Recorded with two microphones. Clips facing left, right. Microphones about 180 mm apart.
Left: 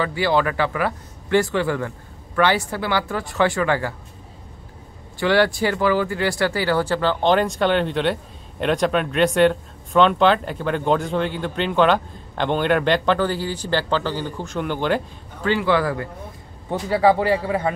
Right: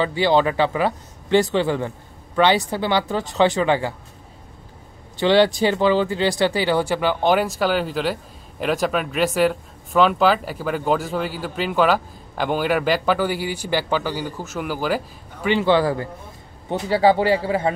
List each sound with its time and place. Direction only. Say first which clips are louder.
0.0 s speech: right 2 dB; 25° right (ahead or behind)
5.1 s speech: right 2 dB; 20° right (ahead or behind); by 15.0 s 5° right (ahead or behind)
15.4 s speech: right 2 dB; 25° right (ahead or behind)